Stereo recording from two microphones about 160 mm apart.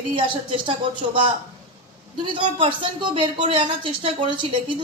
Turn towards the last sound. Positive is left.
turn(degrees=-30)  # may be behind; listen again after turning